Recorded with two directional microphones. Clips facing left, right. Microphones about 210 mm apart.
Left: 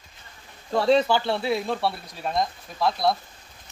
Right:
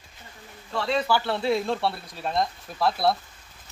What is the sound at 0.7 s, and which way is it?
Speech, 40° left (ahead or behind).